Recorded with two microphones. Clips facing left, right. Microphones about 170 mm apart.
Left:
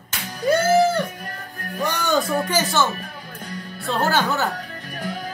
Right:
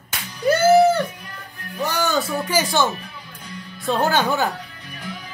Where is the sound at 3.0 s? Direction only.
50° left (ahead or behind).